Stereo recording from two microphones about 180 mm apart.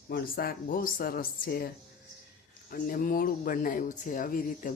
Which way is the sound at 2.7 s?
50° left (ahead or behind).